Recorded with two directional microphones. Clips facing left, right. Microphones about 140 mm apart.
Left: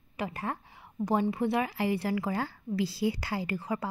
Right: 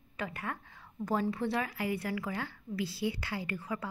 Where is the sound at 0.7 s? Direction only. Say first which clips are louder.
Left 4 dB; 20° left (ahead or behind).